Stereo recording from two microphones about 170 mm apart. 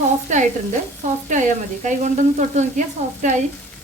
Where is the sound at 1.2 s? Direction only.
45° right (ahead or behind).